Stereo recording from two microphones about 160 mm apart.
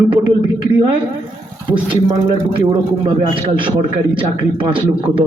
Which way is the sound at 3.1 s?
30° right (ahead or behind).